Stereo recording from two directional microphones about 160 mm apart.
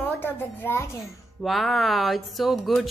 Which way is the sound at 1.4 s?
Centre (ahead or behind).